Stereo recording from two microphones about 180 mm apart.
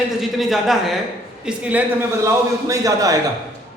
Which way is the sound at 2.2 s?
20° right (ahead or behind).